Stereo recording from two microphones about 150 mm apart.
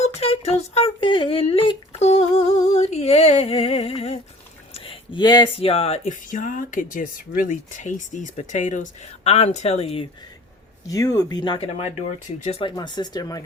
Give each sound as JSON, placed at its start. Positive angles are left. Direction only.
{"t": 0.0, "sound": "a sound", "side_deg": 45}
{"t": 5.6, "sound": "speech", "side_deg": 45}
{"t": 10.8, "sound": "speech", "side_deg": 25}
{"t": 12.7, "sound": "speech", "side_deg": 30}